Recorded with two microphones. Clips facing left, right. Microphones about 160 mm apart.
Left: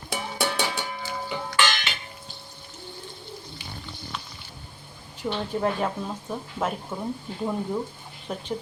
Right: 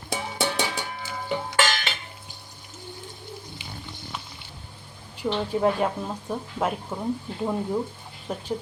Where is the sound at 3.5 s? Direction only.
20° right (ahead or behind).